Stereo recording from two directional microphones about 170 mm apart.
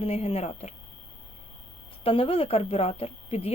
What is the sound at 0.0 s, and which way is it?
Speech, 35° left (ahead or behind).